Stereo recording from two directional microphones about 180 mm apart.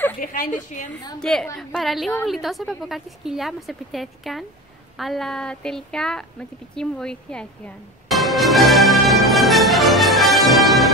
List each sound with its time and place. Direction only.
0.2 s a woman's voice: 50° left (ahead or behind)
1.2 s a woman's voice: 5° left (ahead or behind)
6.7 s music: 5° left (ahead or behind)